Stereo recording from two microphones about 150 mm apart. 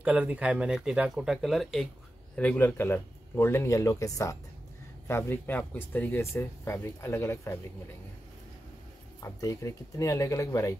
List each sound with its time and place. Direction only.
0.0 s speech: 10° right (ahead or behind); by 7.5 s 15° left (ahead or behind)
9.2 s speech: 20° left (ahead or behind)